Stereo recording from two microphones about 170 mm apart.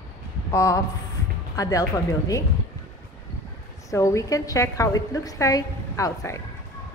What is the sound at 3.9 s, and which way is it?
A woman's voice, 20° left (ahead or behind).